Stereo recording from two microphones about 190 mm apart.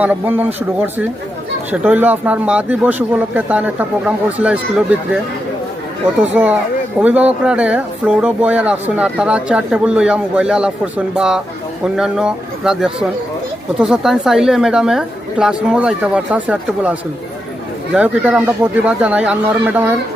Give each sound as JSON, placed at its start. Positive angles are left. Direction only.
{"t": 0.0, "sound": "speech", "side_deg": -10}
{"t": 6.3, "sound": "speech", "side_deg": -10}